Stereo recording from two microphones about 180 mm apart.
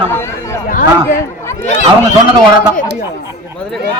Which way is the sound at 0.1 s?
15° left (ahead or behind).